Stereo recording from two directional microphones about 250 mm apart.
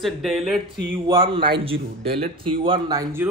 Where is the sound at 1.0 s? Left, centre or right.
Right.